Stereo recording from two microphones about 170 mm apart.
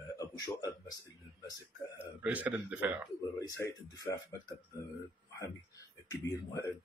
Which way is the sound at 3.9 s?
20° left (ahead or behind).